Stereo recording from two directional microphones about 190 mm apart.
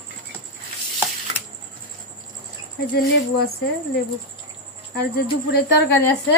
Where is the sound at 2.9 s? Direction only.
60° left (ahead or behind).